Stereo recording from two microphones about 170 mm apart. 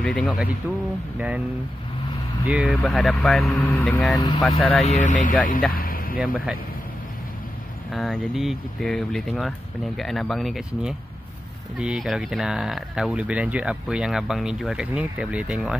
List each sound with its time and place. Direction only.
0.0 s speech: 5° left (ahead or behind)
1.1 s speech: 5° right (ahead or behind)
2.4 s speech: 5° right (ahead or behind)
3.7 s speech: 15° left (ahead or behind)
4.4 s speech: centre (ahead or behind)
4.8 s speech: 45° left (ahead or behind)
5.7 s vehicle: 60° left (ahead or behind)
6.1 s speech: 5° right (ahead or behind)
7.9 s speech: centre (ahead or behind)